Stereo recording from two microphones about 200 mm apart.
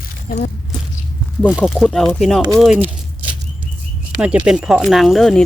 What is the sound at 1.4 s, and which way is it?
Speech, centre (ahead or behind).